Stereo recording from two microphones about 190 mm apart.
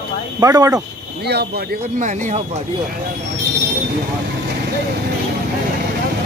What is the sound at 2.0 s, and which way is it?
Speech, 40° right (ahead or behind).